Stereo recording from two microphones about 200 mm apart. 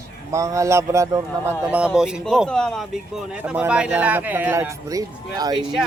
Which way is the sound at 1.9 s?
Centre (ahead or behind).